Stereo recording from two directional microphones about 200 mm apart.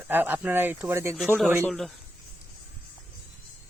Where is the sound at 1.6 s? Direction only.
Centre (ahead or behind).